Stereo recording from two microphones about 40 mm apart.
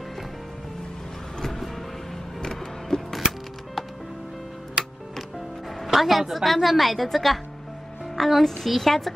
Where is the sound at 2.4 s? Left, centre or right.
Centre.